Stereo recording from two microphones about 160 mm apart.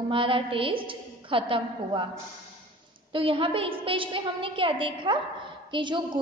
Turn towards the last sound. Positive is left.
turn(degrees=-30)  # may be behind; listen again after turning